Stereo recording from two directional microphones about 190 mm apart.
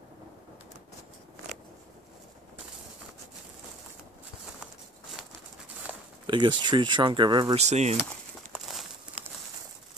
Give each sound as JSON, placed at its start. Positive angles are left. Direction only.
{"t": 5.9, "sound": "a sound", "side_deg": -5}
{"t": 6.2, "sound": "speech", "side_deg": -25}
{"t": 7.6, "sound": "speech", "side_deg": -35}
{"t": 8.5, "sound": "crumpling", "side_deg": 0}